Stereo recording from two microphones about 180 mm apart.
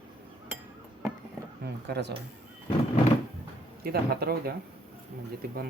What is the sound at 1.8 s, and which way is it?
Speech, 70° right (ahead or behind).